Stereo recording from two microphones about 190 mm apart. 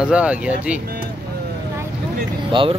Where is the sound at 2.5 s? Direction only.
25° right (ahead or behind).